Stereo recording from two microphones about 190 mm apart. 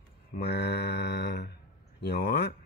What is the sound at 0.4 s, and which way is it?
Mantra, 60° left (ahead or behind).